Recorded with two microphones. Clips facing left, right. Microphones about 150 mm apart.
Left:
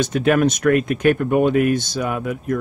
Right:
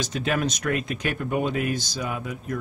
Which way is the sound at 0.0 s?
55° left (ahead or behind).